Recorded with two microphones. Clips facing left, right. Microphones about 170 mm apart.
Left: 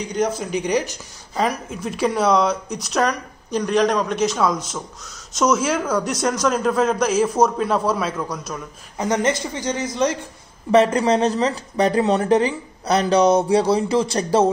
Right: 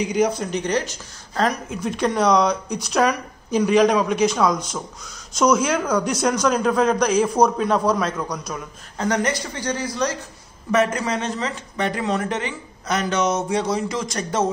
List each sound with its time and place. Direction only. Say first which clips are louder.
0.0 s speech: right 2 dB; 5° right (ahead or behind)
8.9 s speech: left 2 dB; 20° left (ahead or behind)
10.7 s speech: left 5 dB; 30° left (ahead or behind)